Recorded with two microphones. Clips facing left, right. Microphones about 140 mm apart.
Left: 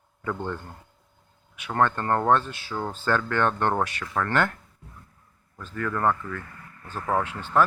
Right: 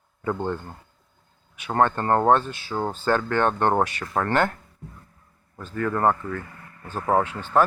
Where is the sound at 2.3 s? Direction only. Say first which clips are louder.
Right 2 dB; 30° right (ahead or behind).